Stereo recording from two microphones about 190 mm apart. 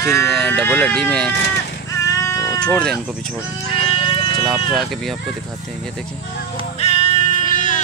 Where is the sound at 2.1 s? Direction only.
15° left (ahead or behind).